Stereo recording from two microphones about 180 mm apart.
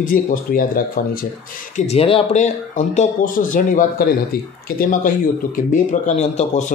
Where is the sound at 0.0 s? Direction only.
50° left (ahead or behind).